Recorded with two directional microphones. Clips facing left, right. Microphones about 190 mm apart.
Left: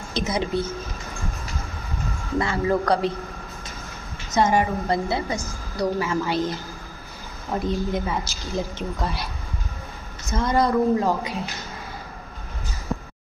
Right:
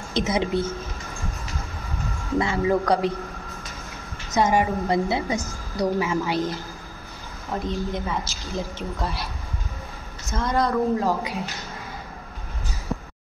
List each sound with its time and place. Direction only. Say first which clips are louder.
0.1 s speech: right 2 dB; 20° right (ahead or behind)
2.3 s a woman's voice: right 1 dB; 15° right (ahead or behind)
4.4 s a woman's voice: even; 15° right (ahead or behind)
7.6 s a woman's voice: left 3 dB; 5° left (ahead or behind)
10.3 s a woman's voice: left 2 dB; centre (ahead or behind)